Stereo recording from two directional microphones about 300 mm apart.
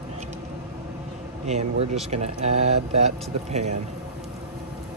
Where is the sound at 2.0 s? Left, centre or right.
Right.